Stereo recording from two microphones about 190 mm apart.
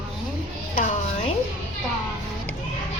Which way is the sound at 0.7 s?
40° left (ahead or behind).